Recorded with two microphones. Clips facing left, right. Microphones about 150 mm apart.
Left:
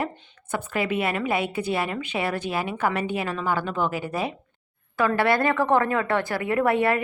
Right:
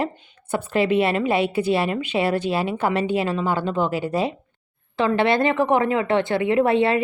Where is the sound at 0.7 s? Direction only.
25° right (ahead or behind).